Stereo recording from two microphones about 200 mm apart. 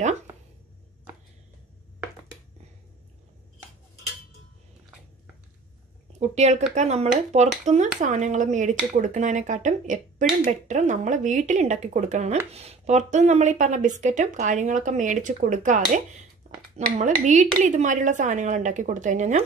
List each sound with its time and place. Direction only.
6.1 s speech: 35° right (ahead or behind)